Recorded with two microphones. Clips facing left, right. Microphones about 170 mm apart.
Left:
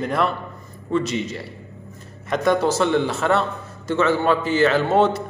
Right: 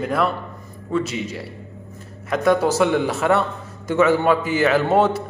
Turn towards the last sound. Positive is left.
turn(degrees=-5)  # may be behind; listen again after turning